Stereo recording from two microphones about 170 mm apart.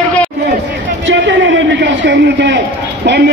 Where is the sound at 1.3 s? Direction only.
90° right.